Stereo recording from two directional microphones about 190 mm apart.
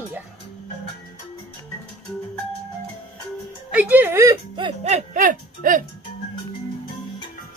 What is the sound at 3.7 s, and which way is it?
Speech, 10° right (ahead or behind).